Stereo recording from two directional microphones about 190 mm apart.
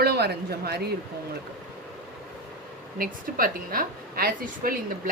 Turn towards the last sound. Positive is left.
turn(degrees=-45)  # may be behind; listen again after turning